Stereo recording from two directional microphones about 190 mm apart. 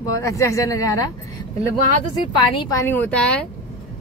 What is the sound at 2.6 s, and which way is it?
Speech, 15° left (ahead or behind).